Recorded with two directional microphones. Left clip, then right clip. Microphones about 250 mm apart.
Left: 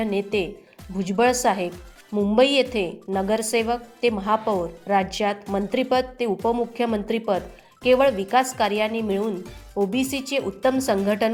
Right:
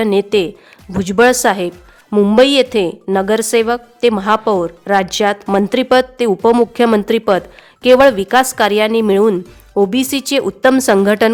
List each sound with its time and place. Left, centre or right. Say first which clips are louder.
0.0 s a woman's voice: right 11 dB; right
2.1 s a woman's voice: right 9 dB; right
9.0 s speech: right 13 dB; right
9.7 s a woman's voice: right 10 dB; right